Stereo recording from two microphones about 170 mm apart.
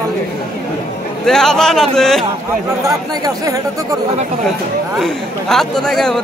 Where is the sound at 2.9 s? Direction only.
20° right (ahead or behind).